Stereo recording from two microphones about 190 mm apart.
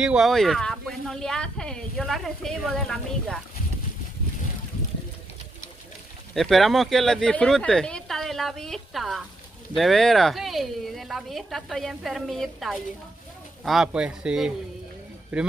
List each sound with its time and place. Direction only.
0.0 s speech: 5° right (ahead or behind)
6.3 s speech: centre (ahead or behind)